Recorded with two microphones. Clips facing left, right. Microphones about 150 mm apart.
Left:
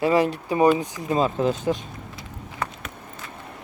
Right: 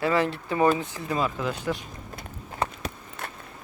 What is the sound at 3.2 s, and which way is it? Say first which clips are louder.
Vehicle: right 5 dB; 65° right (ahead or behind).